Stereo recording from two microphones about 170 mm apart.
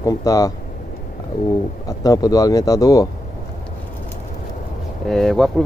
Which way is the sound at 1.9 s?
20° left (ahead or behind).